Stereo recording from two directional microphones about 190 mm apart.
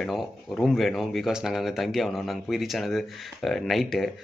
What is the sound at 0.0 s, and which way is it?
Speech, centre (ahead or behind).